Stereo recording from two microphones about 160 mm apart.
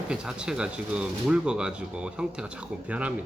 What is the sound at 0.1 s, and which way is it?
Speech, 5° right (ahead or behind).